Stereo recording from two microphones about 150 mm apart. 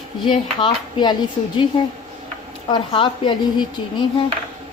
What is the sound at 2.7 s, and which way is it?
Speech, 35° left (ahead or behind).